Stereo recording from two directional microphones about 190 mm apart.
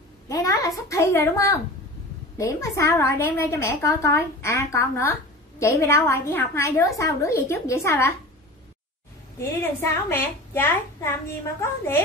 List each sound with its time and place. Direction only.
0.3 s a child's voice: 15° left (ahead or behind)
9.4 s a woman's voice: 15° left (ahead or behind)